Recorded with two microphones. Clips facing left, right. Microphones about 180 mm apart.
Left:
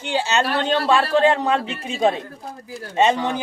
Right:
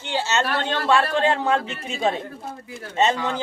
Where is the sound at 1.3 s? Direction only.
35° left (ahead or behind).